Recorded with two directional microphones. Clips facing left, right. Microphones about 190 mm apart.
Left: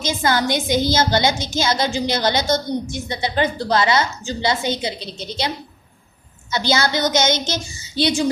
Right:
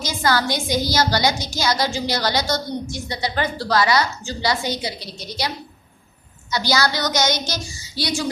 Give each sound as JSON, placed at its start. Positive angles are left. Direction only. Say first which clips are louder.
{"t": 0.0, "sound": "a woman's voice", "louder": "left 1 dB", "side_deg": 20}
{"t": 6.5, "sound": "a woman's voice", "louder": "left 1 dB", "side_deg": 25}